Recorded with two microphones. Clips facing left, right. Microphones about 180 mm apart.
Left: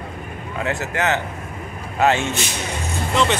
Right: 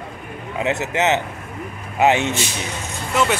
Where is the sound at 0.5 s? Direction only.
20° right (ahead or behind).